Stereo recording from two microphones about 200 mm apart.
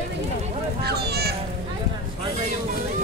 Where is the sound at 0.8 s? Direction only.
55° right (ahead or behind).